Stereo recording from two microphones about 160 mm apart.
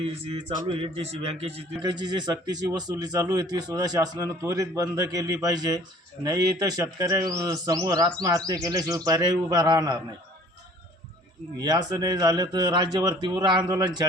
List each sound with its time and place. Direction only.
0.0 s mantra: 40° right (ahead or behind)
0.7 s a man's voice: 35° right (ahead or behind)
11.6 s a man's voice: 25° right (ahead or behind)